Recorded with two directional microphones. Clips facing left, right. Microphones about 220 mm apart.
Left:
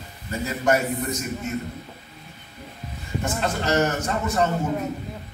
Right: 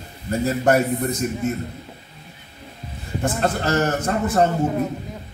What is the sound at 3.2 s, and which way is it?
A man's voice, 50° right (ahead or behind).